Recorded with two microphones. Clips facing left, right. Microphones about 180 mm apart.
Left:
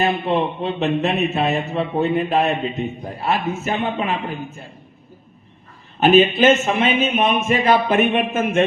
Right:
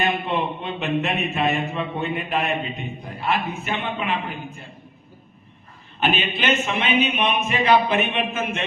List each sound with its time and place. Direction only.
0.0 s a man's voice: 35° left (ahead or behind)
6.0 s speech: 40° left (ahead or behind)